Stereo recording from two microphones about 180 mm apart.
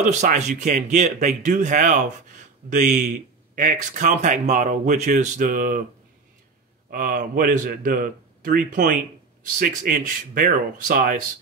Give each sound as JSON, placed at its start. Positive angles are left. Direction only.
{"t": 0.0, "sound": "speech", "side_deg": -40}
{"t": 6.9, "sound": "speech", "side_deg": -50}